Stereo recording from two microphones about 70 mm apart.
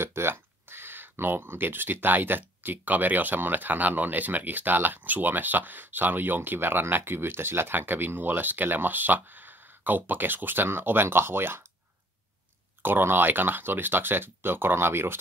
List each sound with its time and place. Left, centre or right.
0.0 s speech: right
12.8 s speech: right